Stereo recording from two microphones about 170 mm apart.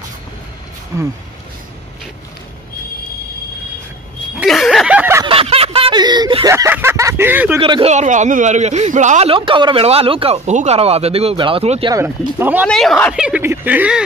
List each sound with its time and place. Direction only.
0.9 s speech: 15° right (ahead or behind)
4.4 s a sound: centre (ahead or behind)
5.2 s snicker: 35° right (ahead or behind); by 7.5 s 10° right (ahead or behind)
7.6 s speech: 30° right (ahead or behind)
7.9 s speech: 45° right (ahead or behind)
9.3 s speech: 30° right (ahead or behind)
11.9 s speech: 15° right (ahead or behind)
12.6 s a woman's voice: 5° left (ahead or behind)